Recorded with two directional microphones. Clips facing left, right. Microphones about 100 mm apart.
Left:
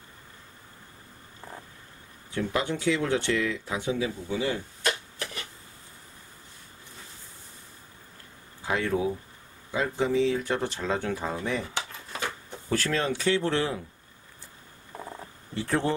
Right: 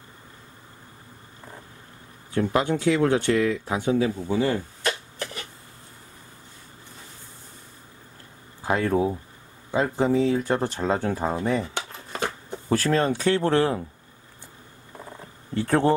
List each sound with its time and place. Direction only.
2.3 s speech: 50° right (ahead or behind)
8.6 s speech: 40° right (ahead or behind)
15.6 s speech: 50° right (ahead or behind)